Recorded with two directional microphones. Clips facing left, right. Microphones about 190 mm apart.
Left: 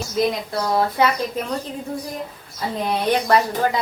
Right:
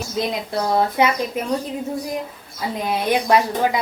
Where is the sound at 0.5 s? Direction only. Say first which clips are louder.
Right 1 dB; 20° right (ahead or behind).